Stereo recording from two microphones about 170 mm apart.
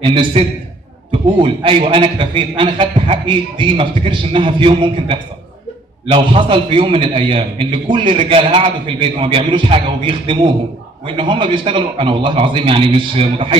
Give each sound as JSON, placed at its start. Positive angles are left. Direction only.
{"t": 0.0, "sound": "a man's voice", "side_deg": -30}